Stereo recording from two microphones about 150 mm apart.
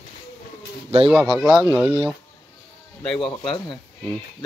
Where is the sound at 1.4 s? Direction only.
5° right (ahead or behind).